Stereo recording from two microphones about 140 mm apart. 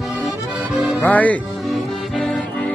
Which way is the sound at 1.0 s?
10° left (ahead or behind).